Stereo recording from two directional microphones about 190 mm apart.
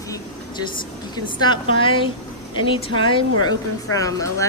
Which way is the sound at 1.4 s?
25° left (ahead or behind).